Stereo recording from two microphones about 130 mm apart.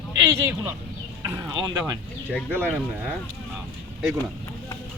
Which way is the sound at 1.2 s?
25° right (ahead or behind).